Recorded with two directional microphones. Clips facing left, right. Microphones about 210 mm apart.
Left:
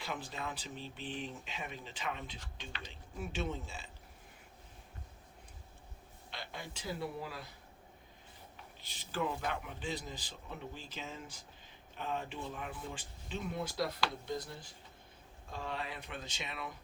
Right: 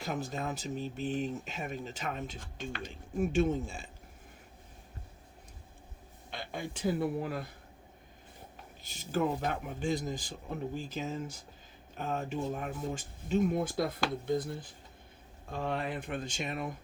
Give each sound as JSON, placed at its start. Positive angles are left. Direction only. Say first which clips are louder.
{"t": 0.0, "sound": "speech", "louder": "right 6 dB", "side_deg": -45}
{"t": 6.3, "sound": "speech", "louder": "right 7 dB", "side_deg": -50}
{"t": 8.8, "sound": "speech", "louder": "right 6 dB", "side_deg": -45}